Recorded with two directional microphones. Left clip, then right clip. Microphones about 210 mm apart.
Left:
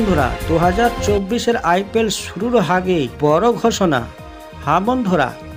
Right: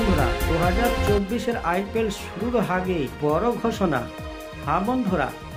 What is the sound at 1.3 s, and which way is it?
Speech, 40° left (ahead or behind).